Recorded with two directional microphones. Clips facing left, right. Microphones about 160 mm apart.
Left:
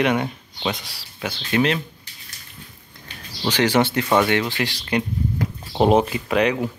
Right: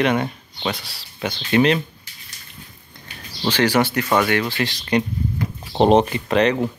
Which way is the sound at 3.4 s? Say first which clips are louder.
Right 1 dB; 20° left (ahead or behind).